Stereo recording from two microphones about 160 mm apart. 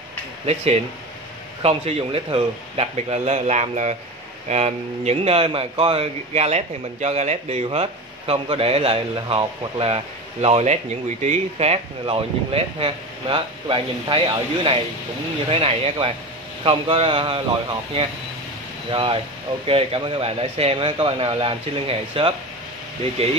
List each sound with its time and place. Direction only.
1.6 s speech: 40° right (ahead or behind)